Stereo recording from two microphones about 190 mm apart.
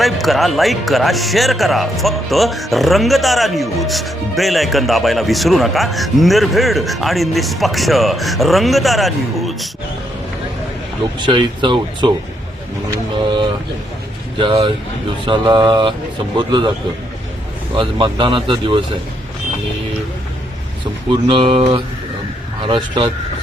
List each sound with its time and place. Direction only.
0.0 s speech: centre (ahead or behind)
11.2 s speech: 25° right (ahead or behind)
14.3 s speech: 25° right (ahead or behind)
17.7 s speech: 25° right (ahead or behind)
21.1 s speech: 30° right (ahead or behind)